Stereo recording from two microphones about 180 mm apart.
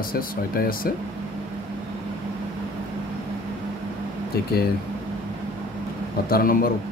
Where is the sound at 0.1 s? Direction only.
55° left (ahead or behind).